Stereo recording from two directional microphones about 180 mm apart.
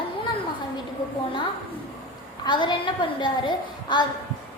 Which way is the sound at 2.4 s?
25° left (ahead or behind).